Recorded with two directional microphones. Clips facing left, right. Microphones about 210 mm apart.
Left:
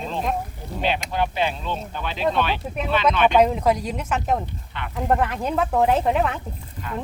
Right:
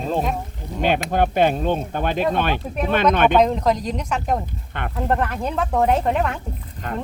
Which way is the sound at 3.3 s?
10° left (ahead or behind).